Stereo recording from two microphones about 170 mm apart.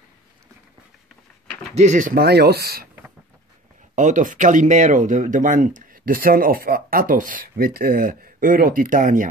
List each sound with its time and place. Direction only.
1.8 s speech: 45° right (ahead or behind); by 2.9 s 65° right (ahead or behind)
3.9 s speech: 45° right (ahead or behind)